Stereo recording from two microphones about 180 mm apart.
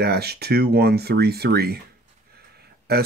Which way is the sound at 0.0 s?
60° right (ahead or behind).